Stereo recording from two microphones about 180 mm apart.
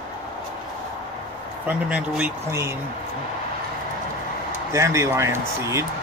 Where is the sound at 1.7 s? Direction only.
5° right (ahead or behind).